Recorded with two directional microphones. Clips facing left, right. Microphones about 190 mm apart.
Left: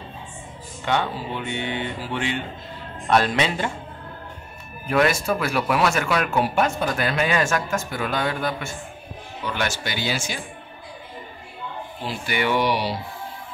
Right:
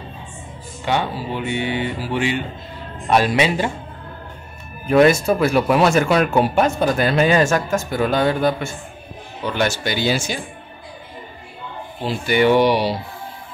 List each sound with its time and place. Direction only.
0.8 s speech: 10° right (ahead or behind)
4.8 s speech: 25° right (ahead or behind)
12.1 s speech: 30° right (ahead or behind)